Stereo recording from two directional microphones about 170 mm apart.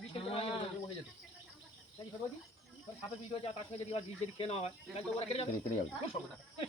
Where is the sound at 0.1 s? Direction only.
35° left (ahead or behind).